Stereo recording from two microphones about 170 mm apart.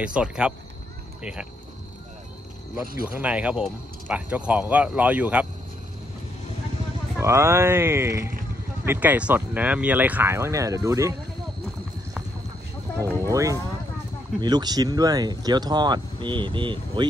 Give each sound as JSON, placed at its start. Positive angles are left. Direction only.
{"t": 0.0, "sound": "speech", "side_deg": -5}
{"t": 3.1, "sound": "speech", "side_deg": -10}
{"t": 7.2, "sound": "speech", "side_deg": -15}
{"t": 13.2, "sound": "speech", "side_deg": -20}